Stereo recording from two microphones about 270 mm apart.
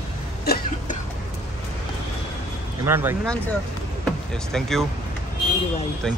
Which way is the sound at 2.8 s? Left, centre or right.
Centre.